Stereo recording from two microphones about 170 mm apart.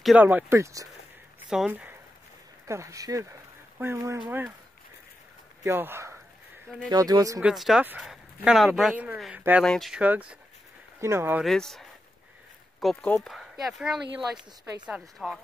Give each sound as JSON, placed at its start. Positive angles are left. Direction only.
{"t": 0.0, "sound": "speech", "side_deg": -5}
{"t": 1.5, "sound": "speech", "side_deg": -5}
{"t": 5.6, "sound": "speech", "side_deg": -15}
{"t": 7.3, "sound": "speech", "side_deg": 0}
{"t": 11.4, "sound": "speech", "side_deg": 0}